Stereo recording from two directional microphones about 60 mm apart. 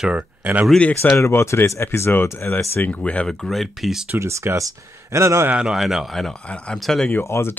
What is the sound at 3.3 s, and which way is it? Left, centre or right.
Speech, centre.